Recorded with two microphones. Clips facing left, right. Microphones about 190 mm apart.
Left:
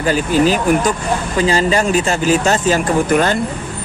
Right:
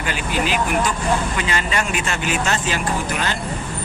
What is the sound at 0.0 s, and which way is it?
Speech, 40° left (ahead or behind).